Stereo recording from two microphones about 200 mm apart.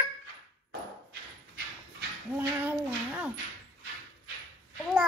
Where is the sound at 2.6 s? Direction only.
10° right (ahead or behind).